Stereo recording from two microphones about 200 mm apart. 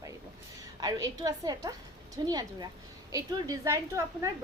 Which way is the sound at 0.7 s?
20° right (ahead or behind).